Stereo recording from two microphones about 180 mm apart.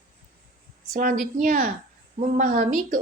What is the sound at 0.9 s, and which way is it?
A woman's voice, 50° right (ahead or behind).